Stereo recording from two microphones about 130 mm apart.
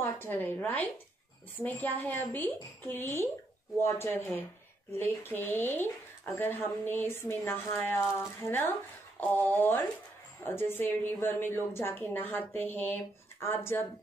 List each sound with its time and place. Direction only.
0.0 s a woman's voice: 15° left (ahead or behind)